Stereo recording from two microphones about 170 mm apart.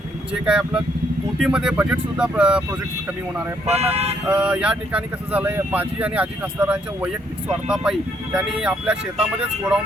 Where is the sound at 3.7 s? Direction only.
40° right (ahead or behind).